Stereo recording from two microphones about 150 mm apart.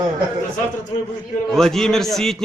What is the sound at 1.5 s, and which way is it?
Speech, centre (ahead or behind).